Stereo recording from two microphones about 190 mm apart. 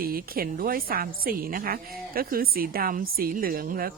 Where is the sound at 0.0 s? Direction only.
50° right (ahead or behind).